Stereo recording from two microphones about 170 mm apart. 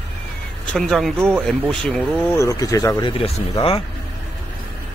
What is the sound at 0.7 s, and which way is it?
Speech, centre (ahead or behind).